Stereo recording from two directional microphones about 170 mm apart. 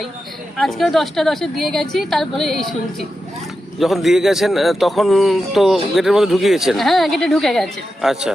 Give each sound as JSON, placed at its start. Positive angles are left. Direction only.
{"t": 0.5, "sound": "a man's voice", "side_deg": 0}
{"t": 3.8, "sound": "a man's voice", "side_deg": 0}